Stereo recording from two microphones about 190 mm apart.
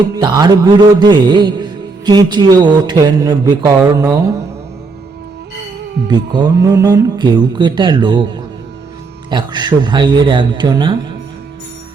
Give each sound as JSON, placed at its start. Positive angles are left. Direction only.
{"t": 0.2, "sound": "speech", "side_deg": -20}
{"t": 6.1, "sound": "speech", "side_deg": -25}
{"t": 9.3, "sound": "speech", "side_deg": -20}